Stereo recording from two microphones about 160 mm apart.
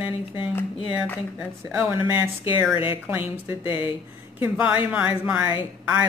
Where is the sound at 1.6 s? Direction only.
15° right (ahead or behind).